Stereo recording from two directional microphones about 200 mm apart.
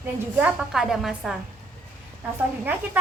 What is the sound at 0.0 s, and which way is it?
Speech, 5° right (ahead or behind).